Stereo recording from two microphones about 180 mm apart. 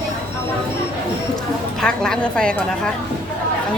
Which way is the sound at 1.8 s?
5° left (ahead or behind).